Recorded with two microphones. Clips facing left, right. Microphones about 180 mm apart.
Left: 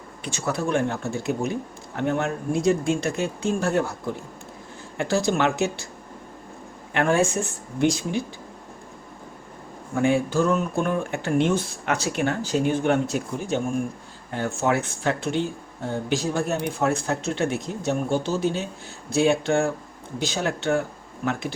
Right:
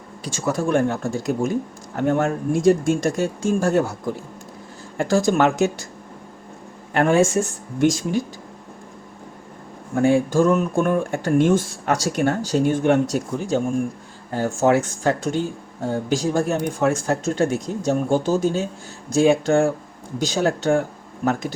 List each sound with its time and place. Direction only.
0.3 s speech: 45° right (ahead or behind)
6.9 s speech: 45° right (ahead or behind)
10.2 s speech: 45° right (ahead or behind)